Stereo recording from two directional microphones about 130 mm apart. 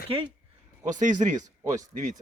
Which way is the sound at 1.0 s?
75° right (ahead or behind).